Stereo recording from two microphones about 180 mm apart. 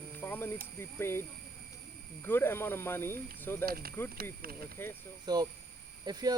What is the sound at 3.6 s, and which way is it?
Speech, 55° right (ahead or behind).